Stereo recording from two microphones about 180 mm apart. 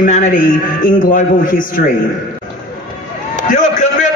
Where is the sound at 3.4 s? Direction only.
45° left (ahead or behind).